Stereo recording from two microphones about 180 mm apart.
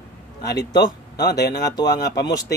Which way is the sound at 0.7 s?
20° left (ahead or behind).